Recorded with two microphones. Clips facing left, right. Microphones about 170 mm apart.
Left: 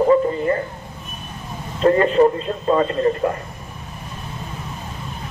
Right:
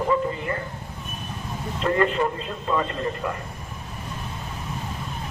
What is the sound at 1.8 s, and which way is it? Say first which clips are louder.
Speech: left 8 dB; 35° left (ahead or behind).